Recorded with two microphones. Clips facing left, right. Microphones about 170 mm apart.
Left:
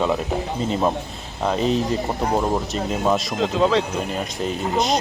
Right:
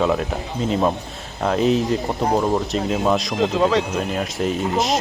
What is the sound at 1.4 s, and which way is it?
Speech, centre (ahead or behind).